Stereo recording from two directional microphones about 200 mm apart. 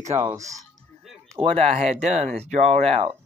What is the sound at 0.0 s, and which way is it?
Speech, 15° right (ahead or behind).